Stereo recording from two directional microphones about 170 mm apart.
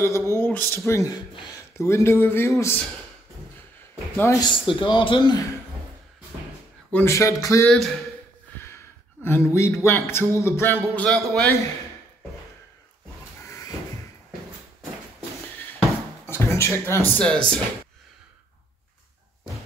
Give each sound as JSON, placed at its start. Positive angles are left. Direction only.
{"t": 0.0, "sound": "speech", "side_deg": 15}
{"t": 4.2, "sound": "a man's voice", "side_deg": 20}
{"t": 6.9, "sound": "speech", "side_deg": 15}
{"t": 7.7, "sound": "speech", "side_deg": 0}
{"t": 8.5, "sound": "a sound", "side_deg": 15}
{"t": 9.8, "sound": "speech", "side_deg": 15}
{"t": 13.5, "sound": "crow", "side_deg": 20}
{"t": 16.3, "sound": "speech", "side_deg": 15}